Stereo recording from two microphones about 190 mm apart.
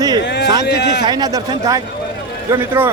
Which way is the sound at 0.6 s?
60° left (ahead or behind).